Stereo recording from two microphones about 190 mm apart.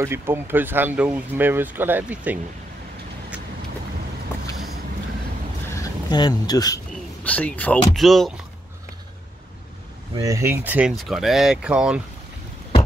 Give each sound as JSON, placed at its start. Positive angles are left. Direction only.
{"t": 0.0, "sound": "speech", "side_deg": -10}
{"t": 5.8, "sound": "speech", "side_deg": 20}
{"t": 7.2, "sound": "speech", "side_deg": 5}
{"t": 10.1, "sound": "speech", "side_deg": -15}